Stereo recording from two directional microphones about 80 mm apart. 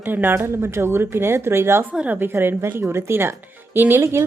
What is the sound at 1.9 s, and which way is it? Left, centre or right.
A woman's voice, right.